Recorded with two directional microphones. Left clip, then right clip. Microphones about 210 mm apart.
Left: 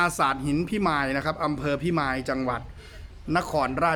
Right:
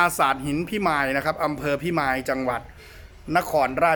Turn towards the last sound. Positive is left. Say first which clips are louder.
# right 4 dB
turn(degrees=0)  # may be behind; listen again after turning